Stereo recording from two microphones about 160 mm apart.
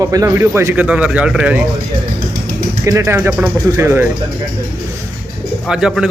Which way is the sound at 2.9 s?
20° right (ahead or behind).